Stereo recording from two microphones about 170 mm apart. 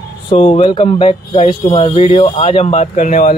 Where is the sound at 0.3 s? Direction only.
35° left (ahead or behind).